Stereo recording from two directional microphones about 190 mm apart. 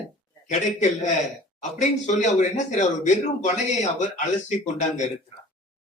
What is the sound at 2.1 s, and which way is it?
A man's voice, 40° left (ahead or behind).